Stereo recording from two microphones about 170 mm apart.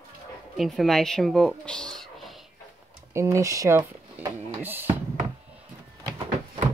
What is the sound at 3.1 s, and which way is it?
Speech, 15° right (ahead or behind).